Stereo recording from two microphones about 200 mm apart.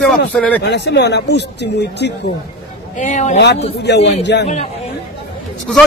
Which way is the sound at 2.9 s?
35° left (ahead or behind).